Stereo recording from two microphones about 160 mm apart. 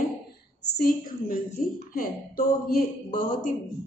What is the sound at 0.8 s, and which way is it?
A woman's voice, 65° left (ahead or behind).